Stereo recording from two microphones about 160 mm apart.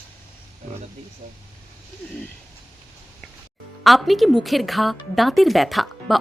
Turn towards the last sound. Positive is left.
turn(degrees=0)  # may be behind; listen again after turning